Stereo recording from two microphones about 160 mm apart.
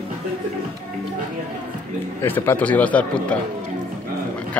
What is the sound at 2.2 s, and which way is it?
A man's voice, 15° left (ahead or behind).